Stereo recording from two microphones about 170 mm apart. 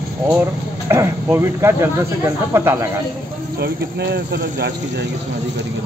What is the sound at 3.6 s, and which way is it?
Speech, 75° right (ahead or behind).